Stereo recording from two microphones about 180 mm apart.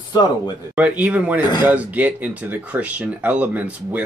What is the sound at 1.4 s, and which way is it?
Speech, 25° left (ahead or behind).